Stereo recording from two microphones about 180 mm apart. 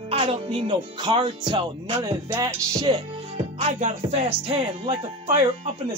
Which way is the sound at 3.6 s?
40° right (ahead or behind).